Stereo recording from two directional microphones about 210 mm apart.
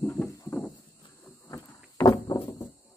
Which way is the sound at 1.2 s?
15° left (ahead or behind).